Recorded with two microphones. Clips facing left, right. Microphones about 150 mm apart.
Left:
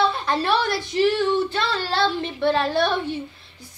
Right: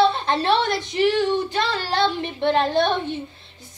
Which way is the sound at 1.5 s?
15° right (ahead or behind).